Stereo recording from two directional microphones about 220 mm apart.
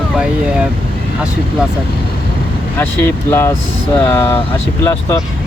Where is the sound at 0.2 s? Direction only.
5° right (ahead or behind).